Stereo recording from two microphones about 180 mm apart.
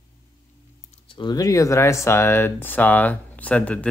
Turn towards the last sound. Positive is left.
turn(degrees=5)  # may be behind; listen again after turning